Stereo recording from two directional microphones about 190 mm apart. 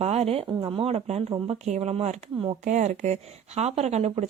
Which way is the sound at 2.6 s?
40° right (ahead or behind).